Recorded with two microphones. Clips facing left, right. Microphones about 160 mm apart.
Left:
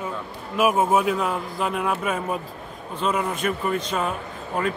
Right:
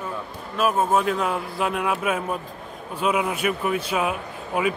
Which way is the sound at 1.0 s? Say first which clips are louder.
Even; centre (ahead or behind).